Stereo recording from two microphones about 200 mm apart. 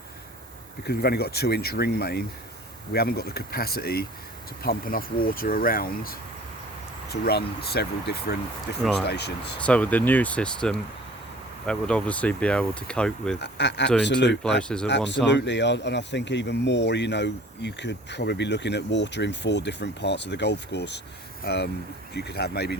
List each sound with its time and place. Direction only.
0.9 s speech: 55° left (ahead or behind)
8.8 s speech: centre (ahead or behind)
9.0 s speech: 55° left (ahead or behind)
9.6 s speech: 5° left (ahead or behind)
13.4 s speech: 60° left (ahead or behind)
14.6 s speech: 5° left (ahead or behind)
14.8 s speech: 60° left (ahead or behind)